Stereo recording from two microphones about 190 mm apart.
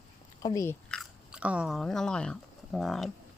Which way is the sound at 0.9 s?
5° right (ahead or behind).